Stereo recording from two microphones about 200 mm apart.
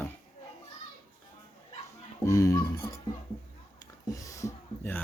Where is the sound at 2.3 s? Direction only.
15° left (ahead or behind).